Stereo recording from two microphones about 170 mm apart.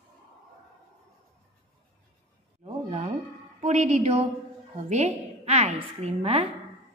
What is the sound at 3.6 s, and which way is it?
Speech, 40° right (ahead or behind).